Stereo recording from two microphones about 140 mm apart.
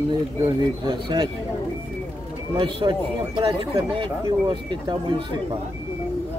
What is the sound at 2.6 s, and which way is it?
Speech, 35° right (ahead or behind).